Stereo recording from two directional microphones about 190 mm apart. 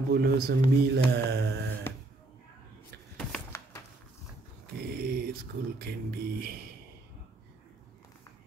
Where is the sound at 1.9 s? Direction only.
10° left (ahead or behind).